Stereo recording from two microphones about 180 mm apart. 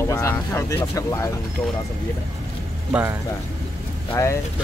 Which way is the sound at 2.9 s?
10° right (ahead or behind).